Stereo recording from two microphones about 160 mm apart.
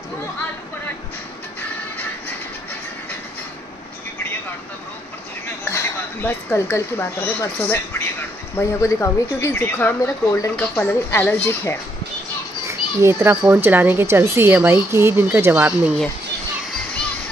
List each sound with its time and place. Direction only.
5.7 s speech: 15° left (ahead or behind)
12.6 s a child's voice: 15° right (ahead or behind)